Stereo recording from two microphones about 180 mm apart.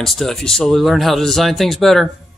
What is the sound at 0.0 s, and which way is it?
Speech, centre (ahead or behind).